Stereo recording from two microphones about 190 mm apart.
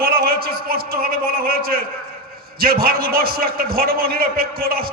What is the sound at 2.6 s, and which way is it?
A man's voice, 50° right (ahead or behind).